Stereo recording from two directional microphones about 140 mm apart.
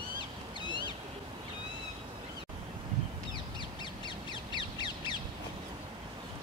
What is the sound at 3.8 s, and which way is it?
Crow, 35° left (ahead or behind).